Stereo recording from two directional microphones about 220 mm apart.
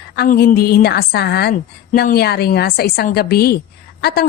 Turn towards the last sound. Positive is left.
turn(degrees=45)  # may be behind; listen again after turning